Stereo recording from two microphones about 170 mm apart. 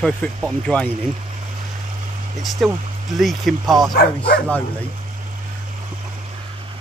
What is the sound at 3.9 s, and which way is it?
Speech, 65° left (ahead or behind).